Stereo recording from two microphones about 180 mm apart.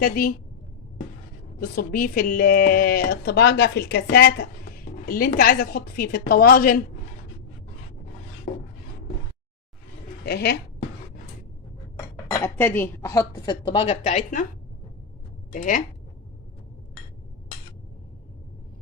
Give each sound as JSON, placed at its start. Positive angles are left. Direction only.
{"t": 0.0, "sound": "a woman's voice", "side_deg": 50}
{"t": 1.5, "sound": "speech", "side_deg": 55}
{"t": 10.2, "sound": "speech", "side_deg": 65}
{"t": 12.1, "sound": "a woman's voice", "side_deg": 10}
{"t": 15.5, "sound": "a woman's voice", "side_deg": 50}